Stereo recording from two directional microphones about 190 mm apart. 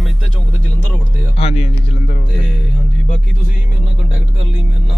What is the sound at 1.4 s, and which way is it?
Speech, 30° left (ahead or behind).